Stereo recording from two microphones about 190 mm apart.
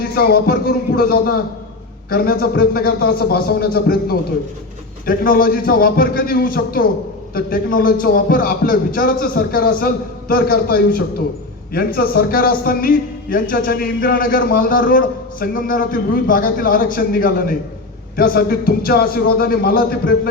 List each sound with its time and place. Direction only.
0.0 s a man's voice: 55° left (ahead or behind)